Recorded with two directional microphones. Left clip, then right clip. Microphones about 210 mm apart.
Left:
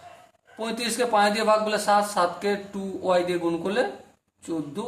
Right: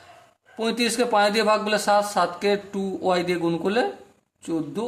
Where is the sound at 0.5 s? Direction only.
40° right (ahead or behind).